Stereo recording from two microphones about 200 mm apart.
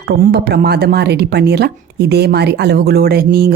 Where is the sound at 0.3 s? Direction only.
55° right (ahead or behind).